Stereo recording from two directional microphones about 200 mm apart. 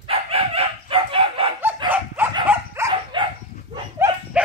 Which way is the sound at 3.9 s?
10° right (ahead or behind).